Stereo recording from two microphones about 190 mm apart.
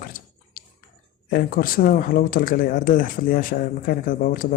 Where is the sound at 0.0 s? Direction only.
50° left (ahead or behind).